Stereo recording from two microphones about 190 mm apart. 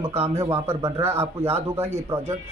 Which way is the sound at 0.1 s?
35° right (ahead or behind).